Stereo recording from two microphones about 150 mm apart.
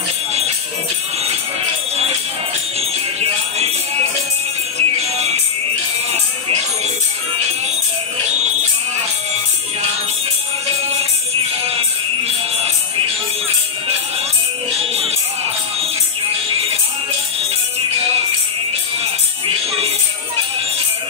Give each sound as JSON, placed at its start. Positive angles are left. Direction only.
{"t": 4.7, "sound": "music", "side_deg": -45}